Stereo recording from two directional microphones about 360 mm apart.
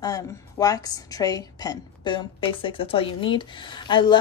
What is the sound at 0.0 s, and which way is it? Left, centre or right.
A woman's voice, centre.